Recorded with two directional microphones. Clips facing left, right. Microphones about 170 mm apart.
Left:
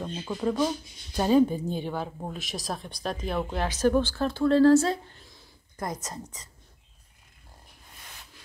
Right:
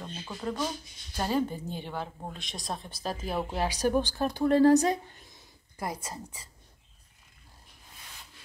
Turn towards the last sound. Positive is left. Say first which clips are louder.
# left 2 dB
turn(degrees=-10)  # may be behind; listen again after turning